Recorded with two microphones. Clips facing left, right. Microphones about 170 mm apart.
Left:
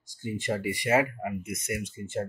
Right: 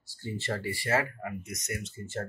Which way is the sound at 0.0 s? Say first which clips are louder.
Left 4 dB; 15° left (ahead or behind).